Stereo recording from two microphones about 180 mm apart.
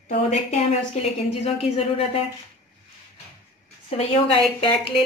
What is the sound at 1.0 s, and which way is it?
Speech, 35° left (ahead or behind).